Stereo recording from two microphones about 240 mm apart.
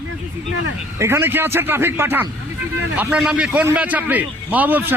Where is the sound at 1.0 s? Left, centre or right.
Centre.